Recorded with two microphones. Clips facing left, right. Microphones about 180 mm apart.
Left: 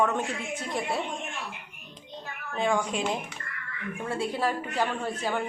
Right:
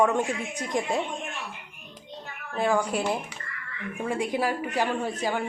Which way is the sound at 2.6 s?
5° right (ahead or behind).